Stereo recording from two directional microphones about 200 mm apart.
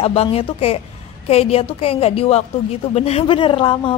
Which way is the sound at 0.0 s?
30° left (ahead or behind).